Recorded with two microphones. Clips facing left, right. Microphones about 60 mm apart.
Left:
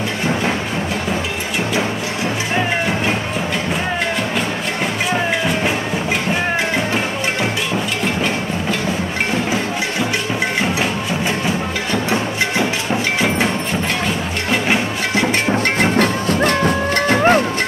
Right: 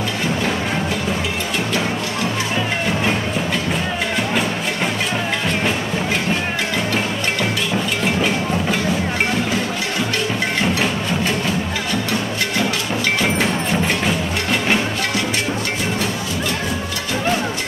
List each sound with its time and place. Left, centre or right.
11.9 s music: left
15.8 s music: left